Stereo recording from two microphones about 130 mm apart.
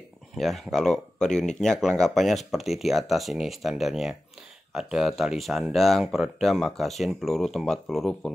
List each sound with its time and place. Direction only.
0.4 s speech: centre (ahead or behind)